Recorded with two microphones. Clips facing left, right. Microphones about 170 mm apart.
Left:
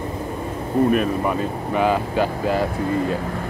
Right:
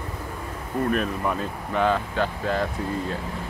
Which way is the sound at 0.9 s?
5° left (ahead or behind).